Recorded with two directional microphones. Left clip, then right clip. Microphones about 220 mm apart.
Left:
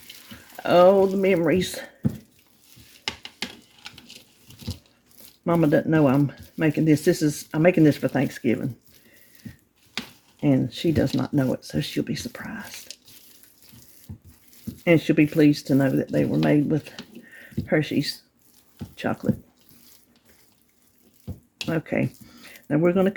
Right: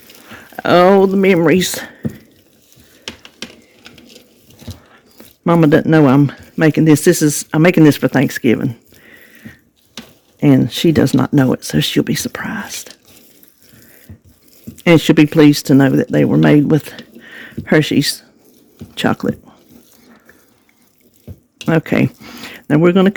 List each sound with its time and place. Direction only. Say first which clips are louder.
0.6 s speech: right 6 dB; 50° right (ahead or behind)
5.5 s speech: right 9 dB; 50° right (ahead or behind)
10.4 s speech: right 10 dB; 50° right (ahead or behind)
14.8 s speech: right 9 dB; 50° right (ahead or behind)
21.7 s speech: right 11 dB; 55° right (ahead or behind)